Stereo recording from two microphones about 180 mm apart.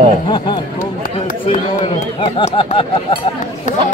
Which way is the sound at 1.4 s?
35° left (ahead or behind).